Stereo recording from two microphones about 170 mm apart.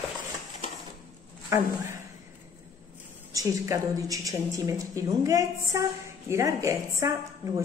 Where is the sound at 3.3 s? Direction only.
20° right (ahead or behind).